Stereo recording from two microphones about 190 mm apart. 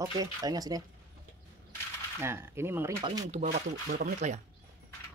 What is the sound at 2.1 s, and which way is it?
Speech, 15° right (ahead or behind).